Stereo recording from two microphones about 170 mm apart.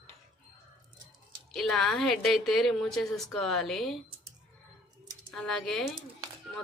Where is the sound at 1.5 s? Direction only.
Centre (ahead or behind).